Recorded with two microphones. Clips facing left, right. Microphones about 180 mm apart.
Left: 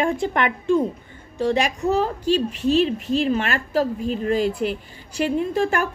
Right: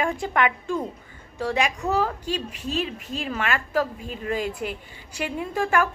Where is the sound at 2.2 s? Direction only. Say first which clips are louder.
Left 10 dB; 80° left.